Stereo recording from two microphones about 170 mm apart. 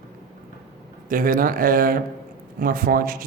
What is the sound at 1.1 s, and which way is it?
A man's voice, 55° right (ahead or behind).